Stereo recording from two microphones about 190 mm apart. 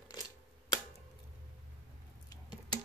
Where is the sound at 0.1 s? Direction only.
20° left (ahead or behind).